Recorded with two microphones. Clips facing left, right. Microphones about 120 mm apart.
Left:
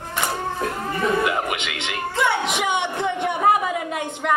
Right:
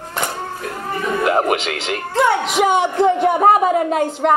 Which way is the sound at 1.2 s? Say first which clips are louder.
Right 7 dB; 40° right (ahead or behind).